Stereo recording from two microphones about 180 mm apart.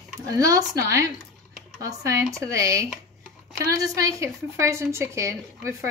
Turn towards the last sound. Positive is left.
turn(degrees=-15)  # may be behind; listen again after turning